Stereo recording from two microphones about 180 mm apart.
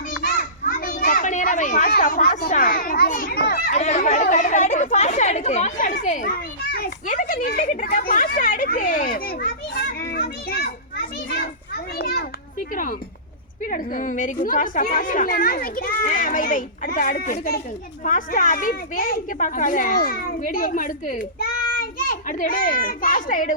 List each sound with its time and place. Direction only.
0.2 s children playing: 45° left (ahead or behind)
3.8 s chatter: 40° left (ahead or behind); by 10.7 s 55° left (ahead or behind)
11.9 s children playing: 55° left (ahead or behind)
13.7 s a child's voice: 45° left (ahead or behind)